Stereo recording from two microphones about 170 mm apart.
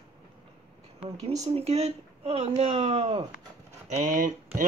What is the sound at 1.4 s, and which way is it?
Speech, 35° right (ahead or behind).